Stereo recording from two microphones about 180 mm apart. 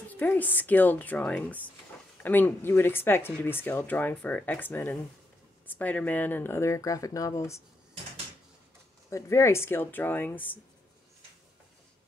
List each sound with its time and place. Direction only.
0.1 s speech: 10° left (ahead or behind)
9.1 s speech: 15° left (ahead or behind)